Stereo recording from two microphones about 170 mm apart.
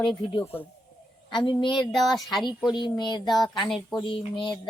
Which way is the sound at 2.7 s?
25° left (ahead or behind).